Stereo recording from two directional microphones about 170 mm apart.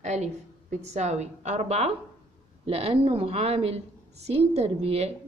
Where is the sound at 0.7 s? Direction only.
40° right (ahead or behind).